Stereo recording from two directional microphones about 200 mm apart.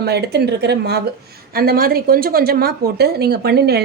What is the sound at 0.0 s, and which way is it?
A woman's voice, 55° right (ahead or behind).